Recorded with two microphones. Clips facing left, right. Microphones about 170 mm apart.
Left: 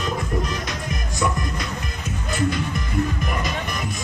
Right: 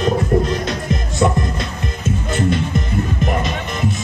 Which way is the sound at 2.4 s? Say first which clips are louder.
Right 3 dB; 25° right (ahead or behind).